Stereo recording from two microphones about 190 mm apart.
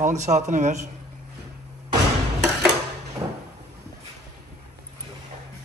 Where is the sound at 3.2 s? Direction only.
20° right (ahead or behind).